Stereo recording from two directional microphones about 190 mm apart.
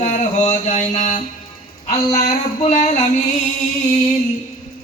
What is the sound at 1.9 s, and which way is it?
Speech, 35° left (ahead or behind).